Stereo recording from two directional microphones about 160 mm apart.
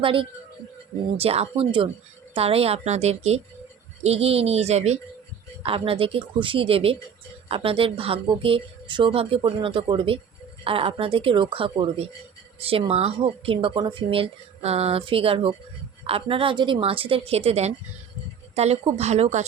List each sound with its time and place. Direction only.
0.0 s a woman's voice: 35° right (ahead or behind)